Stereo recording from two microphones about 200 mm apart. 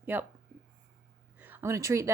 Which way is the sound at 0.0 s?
10° right (ahead or behind).